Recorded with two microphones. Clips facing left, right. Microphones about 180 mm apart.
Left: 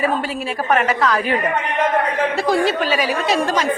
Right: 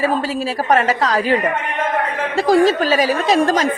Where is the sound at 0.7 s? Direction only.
35° right (ahead or behind).